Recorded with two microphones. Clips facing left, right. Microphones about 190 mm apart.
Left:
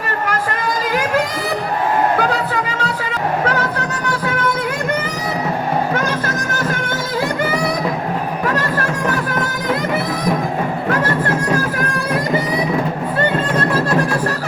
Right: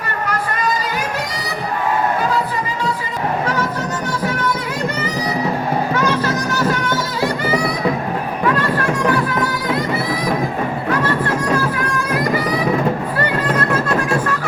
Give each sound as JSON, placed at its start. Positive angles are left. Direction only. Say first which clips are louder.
{"t": 2.3, "sound": "music", "louder": "even", "side_deg": 75}
{"t": 5.9, "sound": "music", "louder": "right 2 dB", "side_deg": 50}